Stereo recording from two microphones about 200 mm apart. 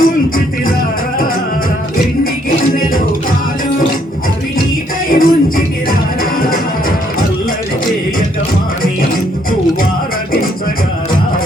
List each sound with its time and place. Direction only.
0.0 s music: 45° left (ahead or behind)
2.7 s music: 45° left (ahead or behind)
5.0 s music: 45° left (ahead or behind)